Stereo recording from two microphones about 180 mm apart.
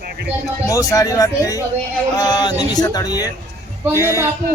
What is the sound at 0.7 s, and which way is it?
A man's voice, 20° left (ahead or behind).